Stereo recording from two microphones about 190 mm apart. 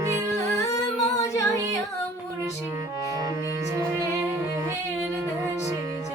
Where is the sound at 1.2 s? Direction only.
15° left (ahead or behind).